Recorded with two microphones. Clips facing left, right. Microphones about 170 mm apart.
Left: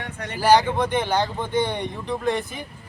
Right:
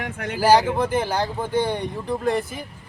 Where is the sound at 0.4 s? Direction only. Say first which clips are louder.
Right 1 dB; 5° right (ahead or behind).